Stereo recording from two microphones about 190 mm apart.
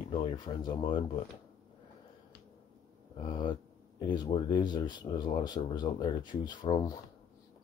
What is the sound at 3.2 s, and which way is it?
Speech, 25° left (ahead or behind).